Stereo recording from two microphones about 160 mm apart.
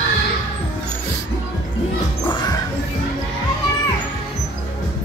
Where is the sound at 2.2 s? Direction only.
30° left (ahead or behind).